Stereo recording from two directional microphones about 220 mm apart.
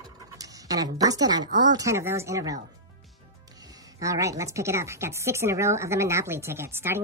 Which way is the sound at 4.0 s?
15° right (ahead or behind).